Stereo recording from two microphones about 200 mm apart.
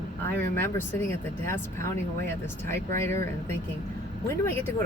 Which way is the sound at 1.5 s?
15° left (ahead or behind).